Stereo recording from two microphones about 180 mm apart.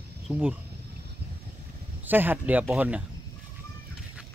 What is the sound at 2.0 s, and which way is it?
Speech, 10° right (ahead or behind).